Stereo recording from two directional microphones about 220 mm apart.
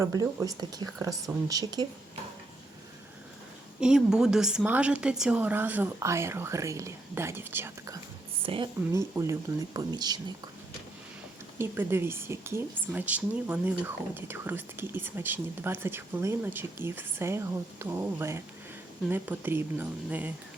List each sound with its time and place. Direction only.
0.0 s speech: 15° right (ahead or behind)
3.8 s speech: 5° right (ahead or behind)
8.4 s speech: 25° right (ahead or behind)
11.5 s speech: 10° right (ahead or behind)